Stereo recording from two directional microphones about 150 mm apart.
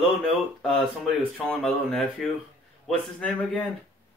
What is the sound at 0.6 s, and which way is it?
Speech, 5° left (ahead or behind).